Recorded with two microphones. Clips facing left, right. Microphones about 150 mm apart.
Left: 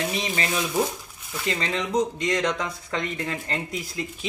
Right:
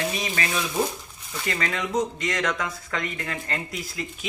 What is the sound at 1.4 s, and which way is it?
Speech, 25° left (ahead or behind).